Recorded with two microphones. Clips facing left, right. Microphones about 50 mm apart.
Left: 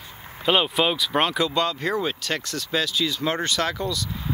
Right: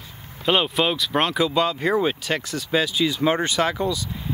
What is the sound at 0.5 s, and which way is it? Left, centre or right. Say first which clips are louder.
Speech: even; centre.